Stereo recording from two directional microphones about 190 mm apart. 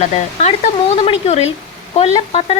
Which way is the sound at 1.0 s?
35° left (ahead or behind).